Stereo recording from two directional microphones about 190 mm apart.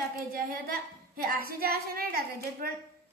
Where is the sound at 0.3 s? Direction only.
50° right (ahead or behind).